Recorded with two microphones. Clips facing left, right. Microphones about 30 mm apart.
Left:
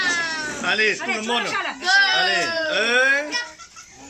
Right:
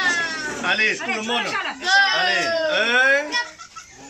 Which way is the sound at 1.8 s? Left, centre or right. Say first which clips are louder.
Even; centre.